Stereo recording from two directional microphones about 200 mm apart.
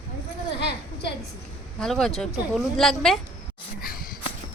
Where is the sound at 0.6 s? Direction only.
55° left (ahead or behind).